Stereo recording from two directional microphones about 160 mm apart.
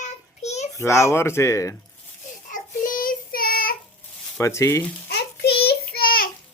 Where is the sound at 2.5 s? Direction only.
55° left (ahead or behind).